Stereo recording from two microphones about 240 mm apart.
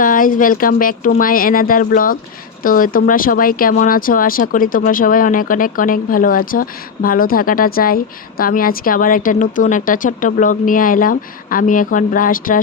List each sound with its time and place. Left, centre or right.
0.0 s speech: left